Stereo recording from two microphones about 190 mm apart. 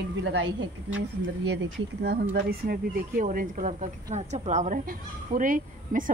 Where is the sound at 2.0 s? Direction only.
55° right (ahead or behind).